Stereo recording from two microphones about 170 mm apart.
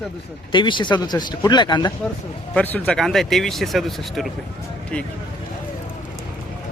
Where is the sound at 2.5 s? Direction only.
10° left (ahead or behind).